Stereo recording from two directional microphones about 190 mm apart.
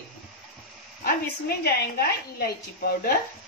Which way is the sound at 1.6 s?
55° left (ahead or behind).